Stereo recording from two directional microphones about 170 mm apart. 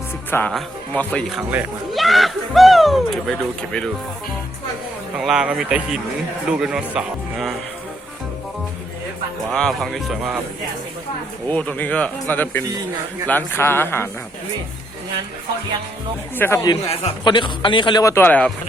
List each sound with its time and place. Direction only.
0.3 s speech: 10° left (ahead or behind)
5.1 s speech: 5° right (ahead or behind)
9.5 s speech: 5° left (ahead or behind)
11.4 s speech: 10° left (ahead or behind)
16.4 s speech: 15° left (ahead or behind)
16.9 s speech: 35° left (ahead or behind); by 18.5 s 10° left (ahead or behind)